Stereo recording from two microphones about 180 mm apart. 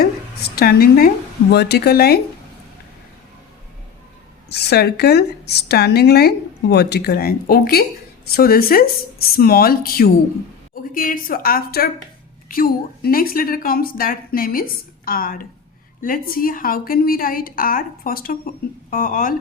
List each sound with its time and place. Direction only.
0.0 s a woman's voice: 60° left (ahead or behind)
4.4 s a woman's voice: 65° left (ahead or behind)